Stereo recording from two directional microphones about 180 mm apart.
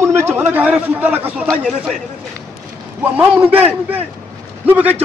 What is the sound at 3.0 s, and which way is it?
Speech, 10° right (ahead or behind).